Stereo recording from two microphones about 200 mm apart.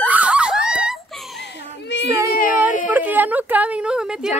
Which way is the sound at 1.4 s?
60° left (ahead or behind).